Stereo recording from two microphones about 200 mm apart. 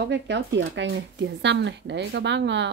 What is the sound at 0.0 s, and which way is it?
Speech, 60° right (ahead or behind).